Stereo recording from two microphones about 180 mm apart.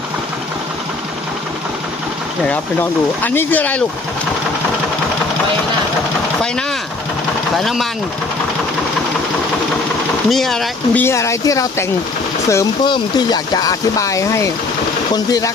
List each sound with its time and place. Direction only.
3.2 s speech: 10° left (ahead or behind)
7.5 s speech: centre (ahead or behind)
10.2 s speech: centre (ahead or behind)
11.0 s speech: 15° left (ahead or behind)